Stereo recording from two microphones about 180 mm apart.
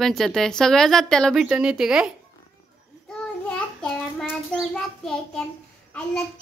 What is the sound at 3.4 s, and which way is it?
A child's voice, 5° left (ahead or behind).